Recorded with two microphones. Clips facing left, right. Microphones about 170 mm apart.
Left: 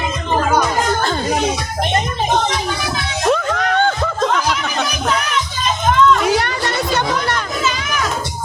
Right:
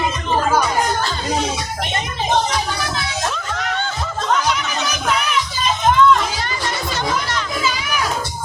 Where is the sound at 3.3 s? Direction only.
55° left (ahead or behind).